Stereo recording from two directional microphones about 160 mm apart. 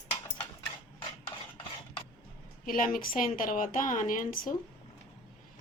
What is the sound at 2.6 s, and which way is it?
Speech, 60° left (ahead or behind).